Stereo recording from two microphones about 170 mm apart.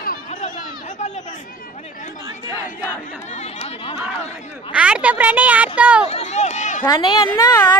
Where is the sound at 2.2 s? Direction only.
15° right (ahead or behind).